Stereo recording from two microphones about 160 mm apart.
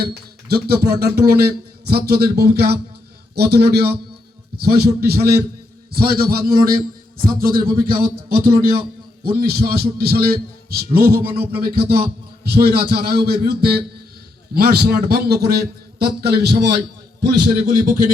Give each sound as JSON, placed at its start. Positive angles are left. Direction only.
{"t": 0.0, "sound": "a man's voice", "side_deg": -80}
{"t": 17.7, "sound": "speech", "side_deg": -60}